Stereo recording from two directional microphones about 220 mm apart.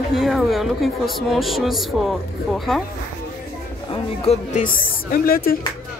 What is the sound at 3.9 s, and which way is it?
Speech, 25° left (ahead or behind).